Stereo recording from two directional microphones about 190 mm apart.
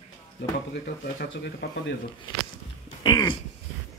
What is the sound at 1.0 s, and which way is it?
Speech, 70° left (ahead or behind).